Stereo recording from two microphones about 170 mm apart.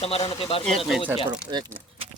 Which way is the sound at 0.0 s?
35° left (ahead or behind).